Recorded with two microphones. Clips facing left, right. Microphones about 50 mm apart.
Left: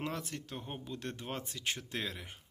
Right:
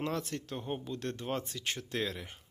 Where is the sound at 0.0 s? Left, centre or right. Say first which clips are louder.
Right 4 dB; centre.